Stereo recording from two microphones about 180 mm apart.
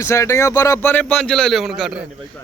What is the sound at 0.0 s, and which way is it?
A man's voice, 15° left (ahead or behind).